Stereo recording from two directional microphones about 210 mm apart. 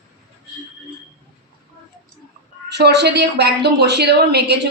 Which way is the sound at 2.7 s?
50° right (ahead or behind).